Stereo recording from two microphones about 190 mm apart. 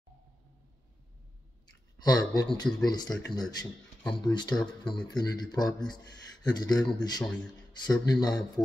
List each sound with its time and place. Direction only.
2.0 s speech: 20° left (ahead or behind)
8.6 s speech: centre (ahead or behind)